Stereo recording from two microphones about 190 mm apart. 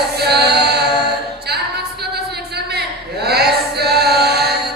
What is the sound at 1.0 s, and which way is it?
A capella, 60° right (ahead or behind).